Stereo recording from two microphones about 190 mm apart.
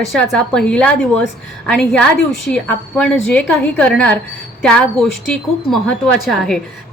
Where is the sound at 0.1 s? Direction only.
5° left (ahead or behind).